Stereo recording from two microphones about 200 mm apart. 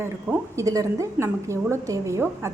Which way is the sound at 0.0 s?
15° right (ahead or behind).